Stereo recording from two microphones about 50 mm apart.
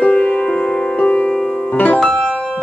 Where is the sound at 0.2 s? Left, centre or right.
Centre.